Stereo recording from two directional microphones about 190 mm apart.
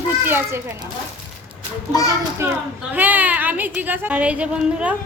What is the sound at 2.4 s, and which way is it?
Speech, 15° right (ahead or behind).